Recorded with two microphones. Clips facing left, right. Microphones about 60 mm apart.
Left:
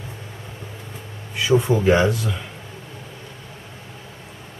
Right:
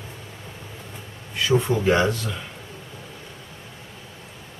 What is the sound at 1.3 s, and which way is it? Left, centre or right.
Speech, centre.